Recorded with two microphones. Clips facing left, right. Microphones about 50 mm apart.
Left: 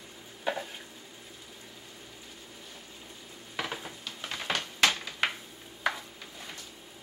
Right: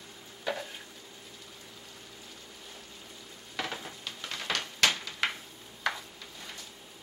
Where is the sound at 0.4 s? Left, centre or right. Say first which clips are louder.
Left 2 dB; centre.